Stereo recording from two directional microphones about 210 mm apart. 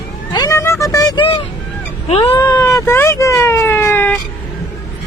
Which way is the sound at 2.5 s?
15° left (ahead or behind).